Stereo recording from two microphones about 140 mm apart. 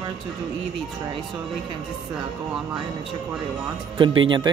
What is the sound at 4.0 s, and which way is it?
Speech, 35° right (ahead or behind).